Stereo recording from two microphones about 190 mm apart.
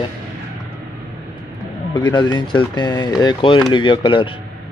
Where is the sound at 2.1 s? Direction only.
25° left (ahead or behind).